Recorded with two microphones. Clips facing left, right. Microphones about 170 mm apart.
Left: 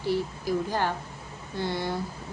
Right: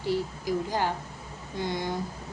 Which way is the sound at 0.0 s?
15° right (ahead or behind).